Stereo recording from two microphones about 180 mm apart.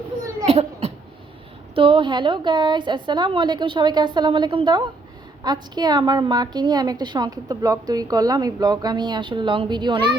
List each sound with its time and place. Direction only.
0.4 s laughter: 35° right (ahead or behind)
1.7 s a woman's voice: 30° right (ahead or behind)